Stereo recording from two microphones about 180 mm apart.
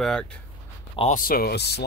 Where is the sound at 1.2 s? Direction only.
55° left (ahead or behind).